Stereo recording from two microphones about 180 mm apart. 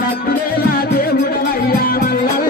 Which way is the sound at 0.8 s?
55° left (ahead or behind).